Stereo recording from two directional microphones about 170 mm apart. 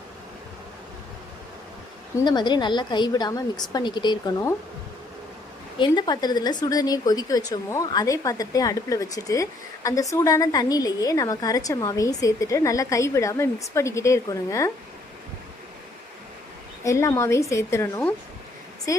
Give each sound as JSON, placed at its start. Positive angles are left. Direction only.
{"t": 2.1, "sound": "a woman's voice", "side_deg": 25}
{"t": 5.8, "sound": "a woman's voice", "side_deg": 25}
{"t": 16.8, "sound": "a woman's voice", "side_deg": 15}